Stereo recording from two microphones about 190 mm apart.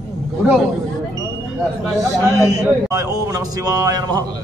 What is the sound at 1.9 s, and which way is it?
Speech, 15° right (ahead or behind).